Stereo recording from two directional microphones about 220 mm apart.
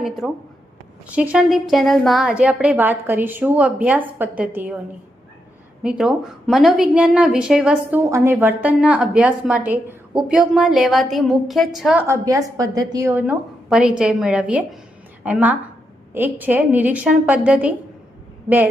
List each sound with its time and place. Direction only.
0.2 s a woman's voice: 5° left (ahead or behind)
5.8 s a woman's voice: 5° right (ahead or behind)